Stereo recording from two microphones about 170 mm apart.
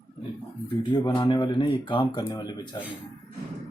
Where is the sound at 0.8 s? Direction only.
25° left (ahead or behind).